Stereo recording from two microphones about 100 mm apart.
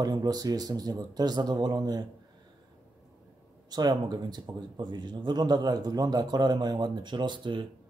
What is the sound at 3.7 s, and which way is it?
Speech, 45° right (ahead or behind).